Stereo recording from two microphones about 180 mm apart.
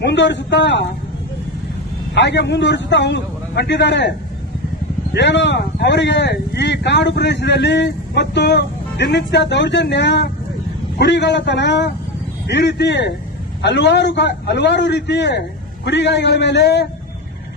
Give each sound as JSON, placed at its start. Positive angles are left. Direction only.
{"t": 0.0, "sound": "speech", "side_deg": 75}
{"t": 2.1, "sound": "speech", "side_deg": 75}
{"t": 5.1, "sound": "speech", "side_deg": 75}